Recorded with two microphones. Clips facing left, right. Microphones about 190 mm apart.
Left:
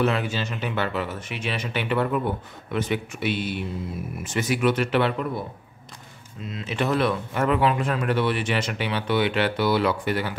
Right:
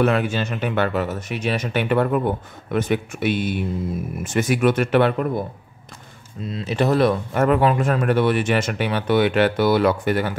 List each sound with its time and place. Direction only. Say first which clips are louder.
0.0 s speech: right 5 dB; 55° right (ahead or behind)
6.4 s speech: right 5 dB; 35° right (ahead or behind)